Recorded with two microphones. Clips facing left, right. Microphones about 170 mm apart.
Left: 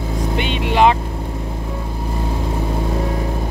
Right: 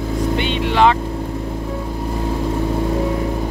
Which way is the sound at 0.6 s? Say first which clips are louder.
Left 1 dB; 15° left (ahead or behind).